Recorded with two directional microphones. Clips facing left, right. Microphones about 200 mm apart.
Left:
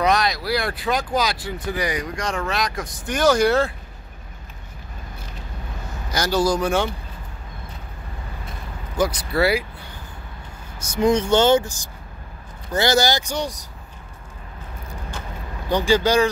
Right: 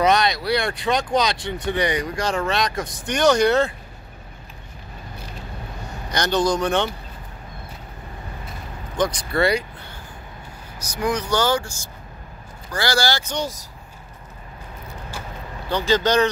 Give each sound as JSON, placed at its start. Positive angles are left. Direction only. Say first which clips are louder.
{"t": 0.0, "sound": "speech", "louder": "right 2 dB", "side_deg": 0}
{"t": 6.0, "sound": "speech", "louder": "even", "side_deg": 5}
{"t": 8.9, "sound": "speech", "louder": "left 1 dB", "side_deg": 5}
{"t": 10.8, "sound": "speech", "louder": "left 6 dB", "side_deg": 25}
{"t": 15.7, "sound": "speech", "louder": "left 1 dB", "side_deg": 15}